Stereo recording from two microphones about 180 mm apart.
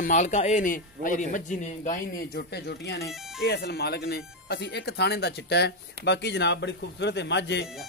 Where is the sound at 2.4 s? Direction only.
65° left (ahead or behind).